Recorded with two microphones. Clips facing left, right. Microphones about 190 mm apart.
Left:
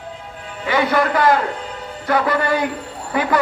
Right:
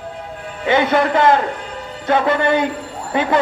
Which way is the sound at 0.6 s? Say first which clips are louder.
Right 2 dB; 25° right (ahead or behind).